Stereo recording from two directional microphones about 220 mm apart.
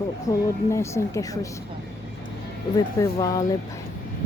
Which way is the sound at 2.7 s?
15° left (ahead or behind).